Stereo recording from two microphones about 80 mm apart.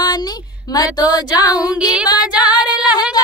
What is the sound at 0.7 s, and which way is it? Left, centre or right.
Female singing, left.